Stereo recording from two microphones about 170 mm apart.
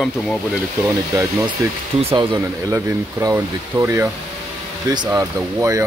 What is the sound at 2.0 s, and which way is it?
Speech, 35° right (ahead or behind).